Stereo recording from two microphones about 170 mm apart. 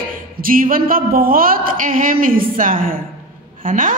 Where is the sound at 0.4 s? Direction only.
55° right (ahead or behind).